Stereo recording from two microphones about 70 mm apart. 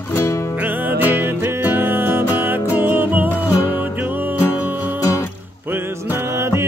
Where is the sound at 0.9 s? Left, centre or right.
Right.